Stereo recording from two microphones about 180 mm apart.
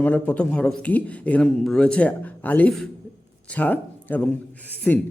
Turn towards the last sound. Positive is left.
turn(degrees=10)  # may be behind; listen again after turning